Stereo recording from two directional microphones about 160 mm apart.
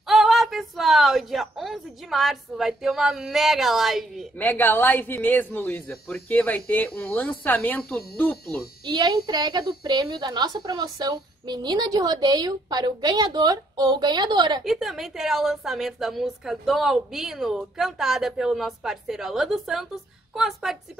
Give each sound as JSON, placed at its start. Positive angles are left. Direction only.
{"t": 0.0, "sound": "a woman's voice", "side_deg": 0}
{"t": 4.4, "sound": "speech", "side_deg": 10}
{"t": 8.8, "sound": "a woman's voice", "side_deg": -25}
{"t": 14.6, "sound": "a woman's voice", "side_deg": 0}